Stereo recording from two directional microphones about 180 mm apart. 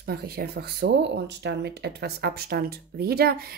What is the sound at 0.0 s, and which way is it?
Speech, 60° right (ahead or behind).